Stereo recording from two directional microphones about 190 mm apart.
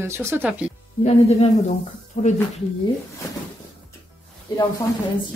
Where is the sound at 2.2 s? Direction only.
35° left (ahead or behind).